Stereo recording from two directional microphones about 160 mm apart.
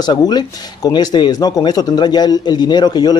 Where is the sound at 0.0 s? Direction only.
25° left (ahead or behind).